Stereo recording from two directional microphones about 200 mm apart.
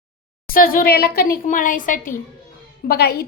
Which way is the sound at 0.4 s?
45° left (ahead or behind).